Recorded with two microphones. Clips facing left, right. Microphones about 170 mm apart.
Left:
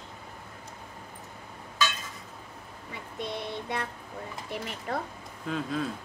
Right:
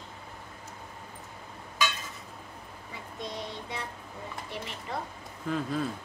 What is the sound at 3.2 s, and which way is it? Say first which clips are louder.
Child singing: left 3 dB; 60° left (ahead or behind).